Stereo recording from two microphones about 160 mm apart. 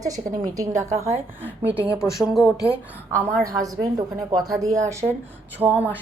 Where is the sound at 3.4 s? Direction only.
20° right (ahead or behind).